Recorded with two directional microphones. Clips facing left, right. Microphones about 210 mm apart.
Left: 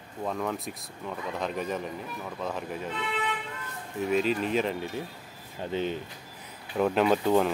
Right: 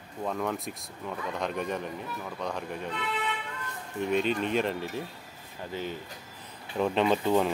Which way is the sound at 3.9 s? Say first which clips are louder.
Left 1 dB; centre (ahead or behind).